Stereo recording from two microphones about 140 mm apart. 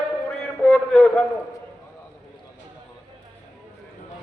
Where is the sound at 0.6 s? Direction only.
10° left (ahead or behind).